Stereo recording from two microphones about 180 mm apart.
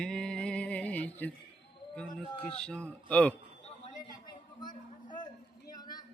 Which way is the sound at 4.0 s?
25° left (ahead or behind).